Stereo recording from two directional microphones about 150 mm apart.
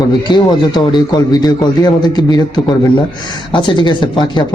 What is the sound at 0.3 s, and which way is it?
A man's voice, 30° left (ahead or behind).